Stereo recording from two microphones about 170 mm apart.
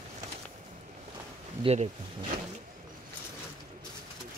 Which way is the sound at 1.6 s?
35° right (ahead or behind).